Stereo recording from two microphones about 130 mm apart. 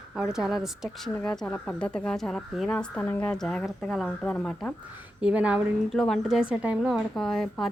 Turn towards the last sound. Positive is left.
turn(degrees=5)  # may be behind; listen again after turning